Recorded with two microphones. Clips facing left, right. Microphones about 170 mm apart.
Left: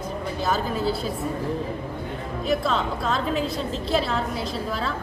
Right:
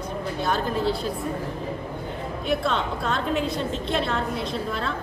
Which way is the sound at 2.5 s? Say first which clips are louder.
Left 1 dB; centre (ahead or behind).